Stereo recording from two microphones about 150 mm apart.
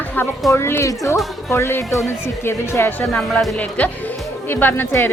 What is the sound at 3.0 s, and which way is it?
Music, centre (ahead or behind).